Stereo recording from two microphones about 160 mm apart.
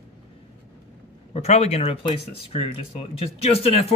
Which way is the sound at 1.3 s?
40° left (ahead or behind).